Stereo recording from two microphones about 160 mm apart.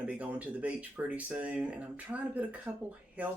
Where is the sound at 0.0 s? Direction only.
10° right (ahead or behind).